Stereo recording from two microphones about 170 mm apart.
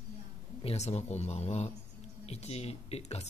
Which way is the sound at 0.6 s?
40° left (ahead or behind).